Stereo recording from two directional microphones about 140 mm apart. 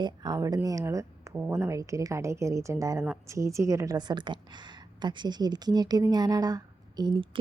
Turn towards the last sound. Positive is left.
turn(degrees=-35)  # may be behind; listen again after turning